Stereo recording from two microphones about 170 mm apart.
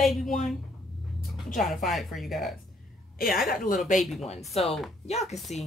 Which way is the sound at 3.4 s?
55° left (ahead or behind).